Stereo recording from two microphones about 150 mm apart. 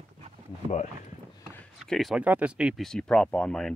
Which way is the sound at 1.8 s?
Centre (ahead or behind).